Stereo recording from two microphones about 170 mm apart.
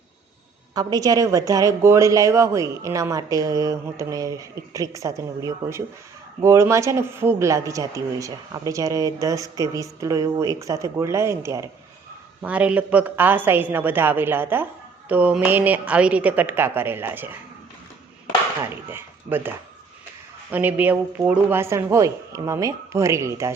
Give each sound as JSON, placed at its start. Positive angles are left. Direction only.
{"t": 0.7, "sound": "a man's voice", "side_deg": -20}
{"t": 18.7, "sound": "a man's voice", "side_deg": -15}